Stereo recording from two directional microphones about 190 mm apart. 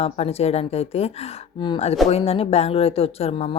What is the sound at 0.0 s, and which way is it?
Speech, 35° left (ahead or behind).